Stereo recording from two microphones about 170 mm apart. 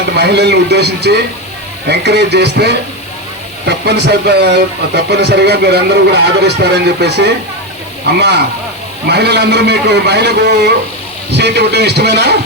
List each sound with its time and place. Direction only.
0.2 s speech: 80° right
9.0 s a man's voice: 75° right (ahead or behind)